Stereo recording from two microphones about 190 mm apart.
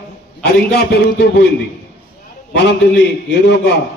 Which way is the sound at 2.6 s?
65° left (ahead or behind).